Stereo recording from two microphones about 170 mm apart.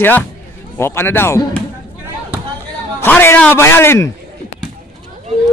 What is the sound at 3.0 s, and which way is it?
Speech, 10° left (ahead or behind).